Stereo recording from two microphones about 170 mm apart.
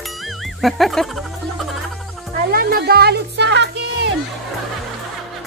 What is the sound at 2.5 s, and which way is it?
Music, 60° right (ahead or behind).